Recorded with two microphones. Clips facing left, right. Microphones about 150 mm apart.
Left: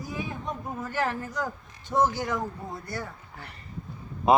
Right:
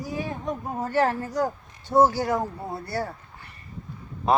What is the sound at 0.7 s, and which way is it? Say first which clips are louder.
A man's voice: right 7 dB; 35° right (ahead or behind).